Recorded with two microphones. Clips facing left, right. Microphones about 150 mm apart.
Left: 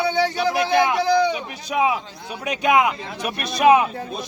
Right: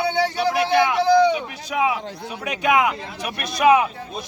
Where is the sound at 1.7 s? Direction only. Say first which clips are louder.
Left 1 dB; 25° left (ahead or behind).